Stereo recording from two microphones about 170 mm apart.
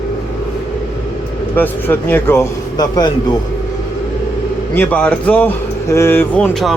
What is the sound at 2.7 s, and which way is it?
Speech, 25° left (ahead or behind).